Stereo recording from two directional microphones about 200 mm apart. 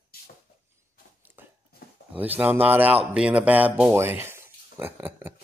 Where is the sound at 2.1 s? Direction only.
10° right (ahead or behind).